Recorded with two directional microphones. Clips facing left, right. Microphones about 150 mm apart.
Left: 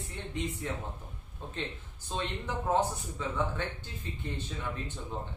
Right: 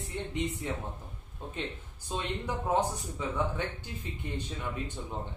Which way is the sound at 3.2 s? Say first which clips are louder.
Right 1 dB; 15° right (ahead or behind).